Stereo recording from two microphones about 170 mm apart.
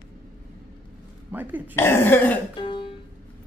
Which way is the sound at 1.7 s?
15° left (ahead or behind).